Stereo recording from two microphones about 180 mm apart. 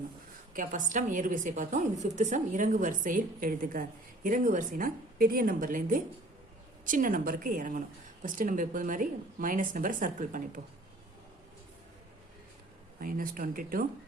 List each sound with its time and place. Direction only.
0.5 s a woman's voice: 45° right (ahead or behind)
13.0 s a woman's voice: 50° right (ahead or behind)